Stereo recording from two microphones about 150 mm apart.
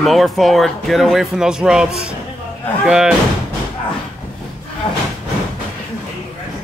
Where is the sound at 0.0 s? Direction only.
Centre (ahead or behind).